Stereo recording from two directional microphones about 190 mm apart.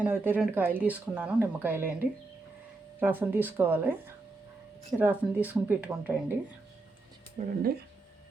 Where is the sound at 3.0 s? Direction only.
10° right (ahead or behind).